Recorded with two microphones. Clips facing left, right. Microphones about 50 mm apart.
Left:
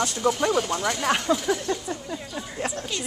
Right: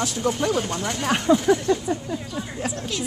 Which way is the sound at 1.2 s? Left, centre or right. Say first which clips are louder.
Right 6 dB; centre.